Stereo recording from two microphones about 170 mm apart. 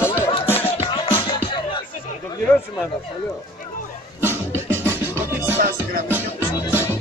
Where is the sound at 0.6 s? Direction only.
35° left (ahead or behind).